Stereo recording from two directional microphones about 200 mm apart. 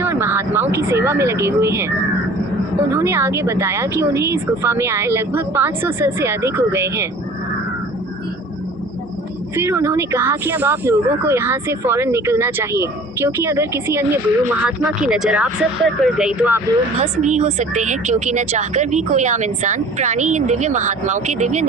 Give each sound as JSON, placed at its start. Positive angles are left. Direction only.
{"t": 0.0, "sound": "speech", "side_deg": -10}
{"t": 9.6, "sound": "speech", "side_deg": -10}
{"t": 17.0, "sound": "a woman's voice", "side_deg": -35}